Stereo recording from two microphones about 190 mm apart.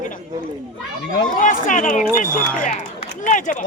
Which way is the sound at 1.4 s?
40° left (ahead or behind).